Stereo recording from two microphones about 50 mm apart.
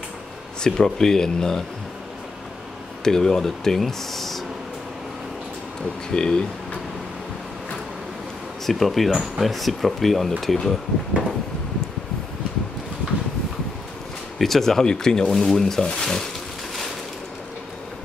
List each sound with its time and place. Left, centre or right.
0.6 s speech: centre
3.0 s speech: centre
6.1 s speech: centre
8.6 s speech: centre
14.4 s speech: centre